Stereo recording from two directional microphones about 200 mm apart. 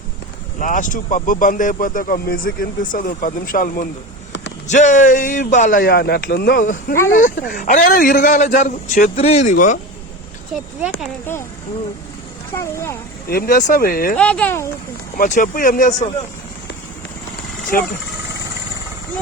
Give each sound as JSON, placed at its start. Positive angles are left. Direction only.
{"t": 0.6, "sound": "a man's voice", "side_deg": 40}
{"t": 11.3, "sound": "speech", "side_deg": 10}
{"t": 12.5, "sound": "speech", "side_deg": 15}
{"t": 13.2, "sound": "speech", "side_deg": 50}
{"t": 14.2, "sound": "speech", "side_deg": 5}
{"t": 15.2, "sound": "a man's voice", "side_deg": 40}